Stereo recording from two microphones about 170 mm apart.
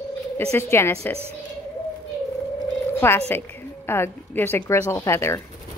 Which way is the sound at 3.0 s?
15° left (ahead or behind).